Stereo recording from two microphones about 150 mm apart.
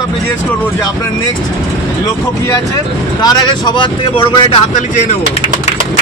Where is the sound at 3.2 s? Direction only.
25° left (ahead or behind).